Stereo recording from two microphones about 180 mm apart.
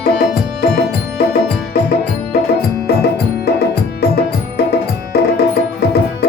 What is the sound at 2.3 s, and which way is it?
Music, 60° left (ahead or behind).